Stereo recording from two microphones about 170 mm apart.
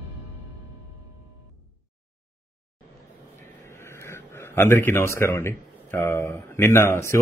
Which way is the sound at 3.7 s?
15° left (ahead or behind).